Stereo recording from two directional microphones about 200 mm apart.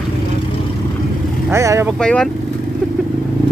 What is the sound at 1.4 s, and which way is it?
Speech, 15° right (ahead or behind).